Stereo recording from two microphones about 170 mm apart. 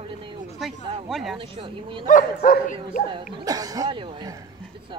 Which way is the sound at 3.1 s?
20° right (ahead or behind).